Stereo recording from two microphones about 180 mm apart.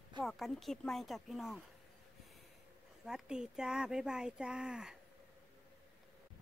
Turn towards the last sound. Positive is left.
turn(degrees=-5)  # may be behind; listen again after turning